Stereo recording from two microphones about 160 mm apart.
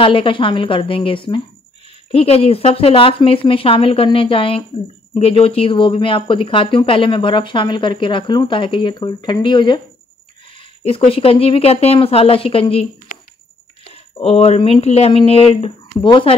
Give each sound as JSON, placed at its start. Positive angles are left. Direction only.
{"t": 0.0, "sound": "speech", "side_deg": 35}
{"t": 10.8, "sound": "speech", "side_deg": 35}
{"t": 14.2, "sound": "speech", "side_deg": 40}